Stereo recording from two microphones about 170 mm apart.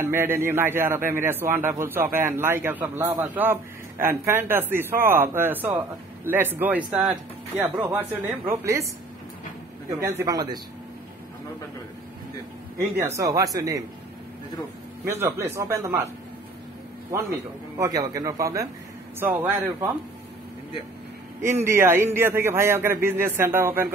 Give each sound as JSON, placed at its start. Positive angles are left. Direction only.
{"t": 0.0, "sound": "a man's voice", "side_deg": -15}
{"t": 9.8, "sound": "speech", "side_deg": -15}
{"t": 12.7, "sound": "speech", "side_deg": -15}
{"t": 15.2, "sound": "a man's voice", "side_deg": -15}
{"t": 17.7, "sound": "a man's voice", "side_deg": -20}
{"t": 21.6, "sound": "a man's voice", "side_deg": -15}